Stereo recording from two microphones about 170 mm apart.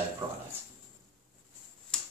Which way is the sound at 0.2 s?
30° right (ahead or behind).